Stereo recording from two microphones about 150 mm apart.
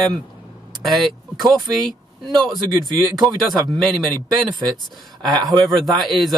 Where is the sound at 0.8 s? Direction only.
Centre (ahead or behind).